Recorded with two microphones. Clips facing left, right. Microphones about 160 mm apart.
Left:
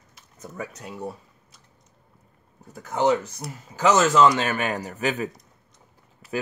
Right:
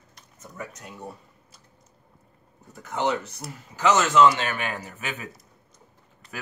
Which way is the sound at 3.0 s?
40° left (ahead or behind).